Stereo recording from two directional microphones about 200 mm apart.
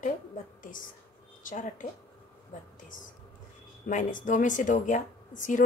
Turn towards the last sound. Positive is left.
turn(degrees=40)  # may be behind; listen again after turning